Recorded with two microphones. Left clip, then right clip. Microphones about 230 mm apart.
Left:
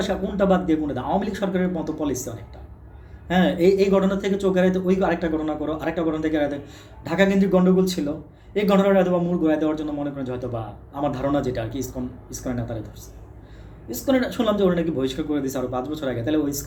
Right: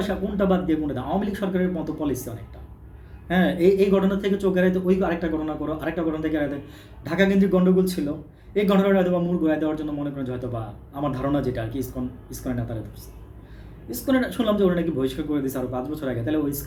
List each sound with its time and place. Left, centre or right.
0.1 s speech: centre
13.9 s speech: centre